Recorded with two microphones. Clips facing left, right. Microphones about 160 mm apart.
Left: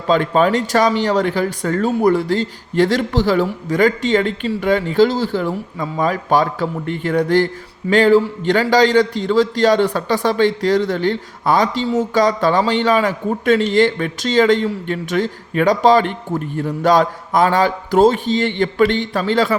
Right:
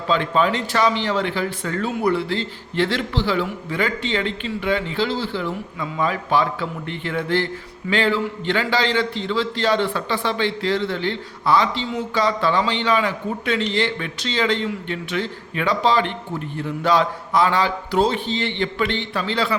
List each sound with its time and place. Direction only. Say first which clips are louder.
0.1 s speech: left 5 dB; 45° left (ahead or behind)